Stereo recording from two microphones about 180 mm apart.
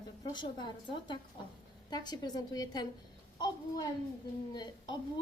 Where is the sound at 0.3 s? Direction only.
25° left (ahead or behind).